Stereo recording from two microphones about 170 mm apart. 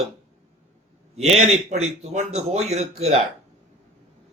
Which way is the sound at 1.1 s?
40° right (ahead or behind).